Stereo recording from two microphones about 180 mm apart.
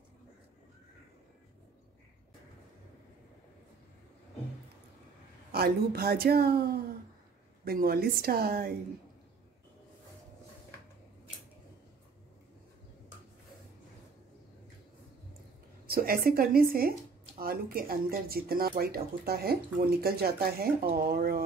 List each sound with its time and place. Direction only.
5.5 s speech: 60° right (ahead or behind)
15.9 s a woman's voice: 55° right (ahead or behind)